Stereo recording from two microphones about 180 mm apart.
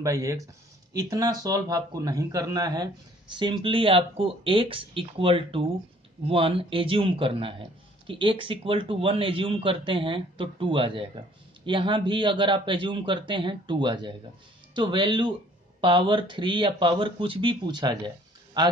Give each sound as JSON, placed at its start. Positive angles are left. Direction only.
{"t": 0.0, "sound": "a man's voice", "side_deg": -15}